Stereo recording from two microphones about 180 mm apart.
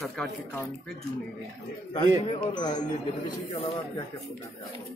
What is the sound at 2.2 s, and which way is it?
Speech, 25° left (ahead or behind).